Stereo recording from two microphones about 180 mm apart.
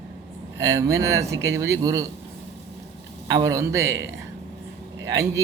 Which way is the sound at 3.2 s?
20° right (ahead or behind).